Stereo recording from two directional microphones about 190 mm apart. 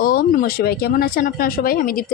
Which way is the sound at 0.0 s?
50° left (ahead or behind).